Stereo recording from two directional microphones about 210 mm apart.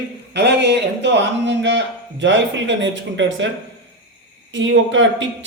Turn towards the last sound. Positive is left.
turn(degrees=-65)  # may be behind; listen again after turning